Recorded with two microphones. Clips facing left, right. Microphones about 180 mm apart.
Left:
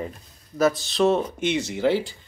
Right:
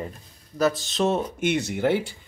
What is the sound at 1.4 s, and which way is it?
Speech, 60° right (ahead or behind).